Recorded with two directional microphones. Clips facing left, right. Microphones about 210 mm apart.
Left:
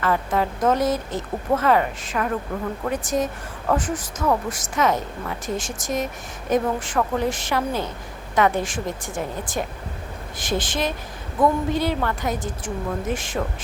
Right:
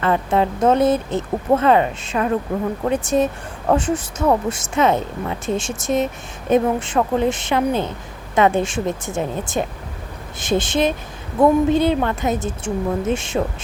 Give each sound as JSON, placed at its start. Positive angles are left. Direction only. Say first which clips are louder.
{"t": 0.0, "sound": "speech", "louder": "right 4 dB", "side_deg": -25}